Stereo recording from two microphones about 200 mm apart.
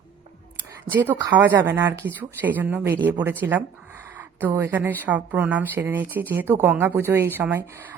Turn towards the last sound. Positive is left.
turn(degrees=-10)  # may be behind; listen again after turning